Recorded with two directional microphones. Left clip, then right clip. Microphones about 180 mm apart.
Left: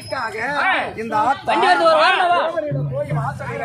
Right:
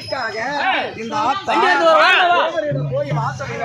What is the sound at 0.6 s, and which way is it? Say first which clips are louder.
Speech: left 1 dB; 15° right (ahead or behind).